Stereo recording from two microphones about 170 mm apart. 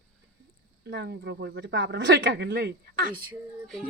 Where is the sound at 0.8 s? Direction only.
85° right; by 3.2 s 60° right (ahead or behind).